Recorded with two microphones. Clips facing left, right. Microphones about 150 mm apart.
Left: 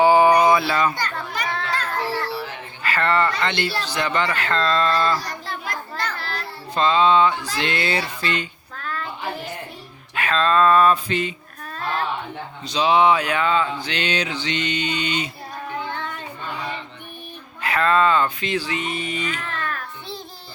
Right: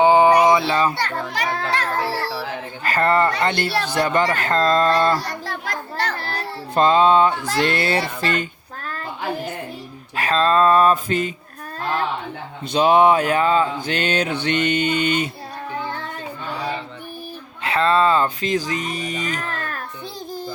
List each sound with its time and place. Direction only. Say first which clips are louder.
0.0 s a sound: right 1 dB; 20° right (ahead or behind)
0.7 s speech: right 2 dB; 30° right (ahead or behind)
0.9 s children playing: right 3 dB; 90° right
2.8 s speech: right 3 dB; 40° right (ahead or behind)
3.4 s mantra: right 2 dB; 45° right (ahead or behind)
3.7 s mantra: right 4 dB; 55° right (ahead or behind)
5.2 s children playing: right 2 dB; 85° right
6.1 s music: right 3 dB; 40° right (ahead or behind)
7.6 s a child's voice: right 4 dB; 40° right (ahead or behind)
10.2 s speech: right 2 dB; 35° right (ahead or behind)
12.6 s mantra: right 3 dB; 50° right (ahead or behind)
16.6 s child singing: right 5 dB; 35° right (ahead or behind)
17.6 s speech: right 1 dB; 25° right (ahead or behind)